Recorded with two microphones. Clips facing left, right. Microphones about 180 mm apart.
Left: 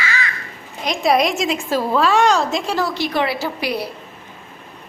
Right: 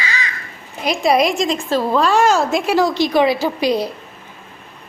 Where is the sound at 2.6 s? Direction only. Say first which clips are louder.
Right 5 dB; 15° right (ahead or behind).